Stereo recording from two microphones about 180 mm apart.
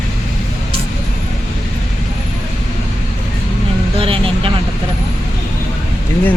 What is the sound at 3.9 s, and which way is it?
Speech, 30° right (ahead or behind).